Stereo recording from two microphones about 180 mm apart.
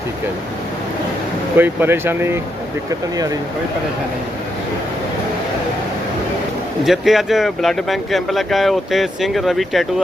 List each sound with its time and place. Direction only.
1.5 s speech: 10° right (ahead or behind)
6.8 s speech: centre (ahead or behind)